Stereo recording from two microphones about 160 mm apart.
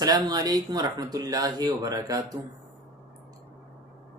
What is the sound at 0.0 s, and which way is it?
Speech, 25° right (ahead or behind).